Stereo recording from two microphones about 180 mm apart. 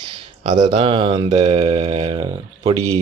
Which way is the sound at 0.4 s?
40° right (ahead or behind).